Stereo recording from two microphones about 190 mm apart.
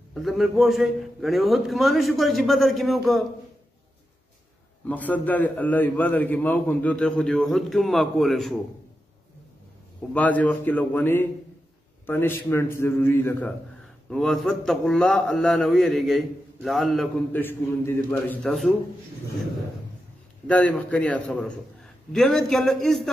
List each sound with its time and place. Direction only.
0.1 s a man's voice: centre (ahead or behind)
4.8 s a man's voice: 10° left (ahead or behind)
10.1 s a man's voice: 10° left (ahead or behind)
20.4 s a man's voice: 5° left (ahead or behind)